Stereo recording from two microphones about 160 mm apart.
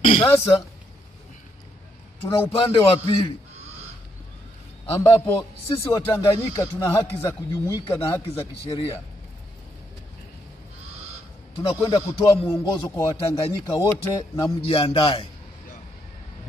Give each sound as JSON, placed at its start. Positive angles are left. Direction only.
{"t": 0.0, "sound": "a sound", "side_deg": 30}
{"t": 2.5, "sound": "a man's voice", "side_deg": 35}
{"t": 4.8, "sound": "a man's voice", "side_deg": 40}
{"t": 5.2, "sound": "speech", "side_deg": 20}
{"t": 8.0, "sound": "a man's voice", "side_deg": 35}
{"t": 11.7, "sound": "speech", "side_deg": 20}
{"t": 14.6, "sound": "a man's voice", "side_deg": 35}